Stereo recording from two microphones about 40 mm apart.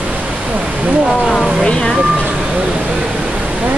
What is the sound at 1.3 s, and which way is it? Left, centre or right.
Speech, left.